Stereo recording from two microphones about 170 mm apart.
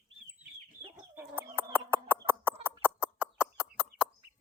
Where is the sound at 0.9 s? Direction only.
10° right (ahead or behind).